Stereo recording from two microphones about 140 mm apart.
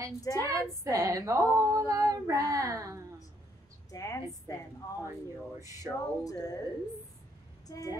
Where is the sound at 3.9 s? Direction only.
25° left (ahead or behind).